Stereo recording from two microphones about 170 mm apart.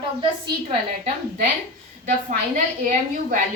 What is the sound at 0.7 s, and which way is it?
A woman's voice, 45° right (ahead or behind).